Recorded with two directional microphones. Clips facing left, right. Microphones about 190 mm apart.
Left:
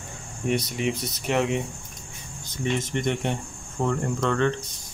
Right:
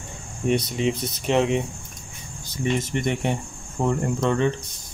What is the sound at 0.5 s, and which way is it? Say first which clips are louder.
Speech: right 3 dB; 25° right (ahead or behind).